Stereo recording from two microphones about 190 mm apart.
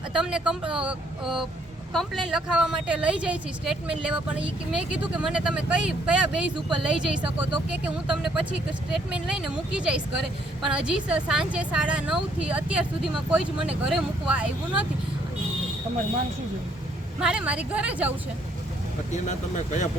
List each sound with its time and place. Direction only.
0.1 s a woman's voice: 5° right (ahead or behind)
9.7 s a woman's voice: 5° right (ahead or behind)
17.2 s a woman's voice: 5° right (ahead or behind)
19.1 s speech: 40° left (ahead or behind)